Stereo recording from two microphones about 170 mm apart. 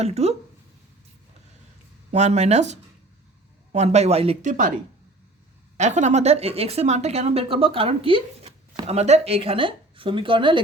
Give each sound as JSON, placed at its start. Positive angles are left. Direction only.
{"t": 0.0, "sound": "a woman's voice", "side_deg": -40}
{"t": 2.0, "sound": "a woman's voice", "side_deg": -40}
{"t": 5.7, "sound": "a woman's voice", "side_deg": -45}